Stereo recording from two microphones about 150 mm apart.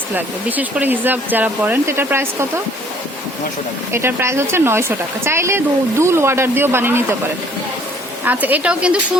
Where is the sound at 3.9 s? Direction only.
15° right (ahead or behind).